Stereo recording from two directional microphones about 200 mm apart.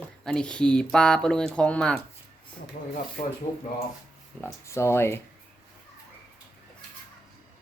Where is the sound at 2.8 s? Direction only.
45° left (ahead or behind).